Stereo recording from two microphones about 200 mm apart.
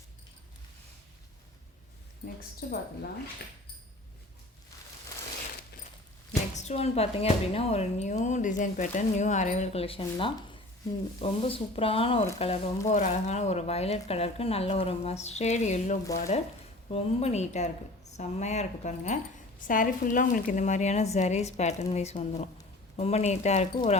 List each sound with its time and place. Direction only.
2.2 s speech: 50° left (ahead or behind)
6.6 s speech: 35° left (ahead or behind)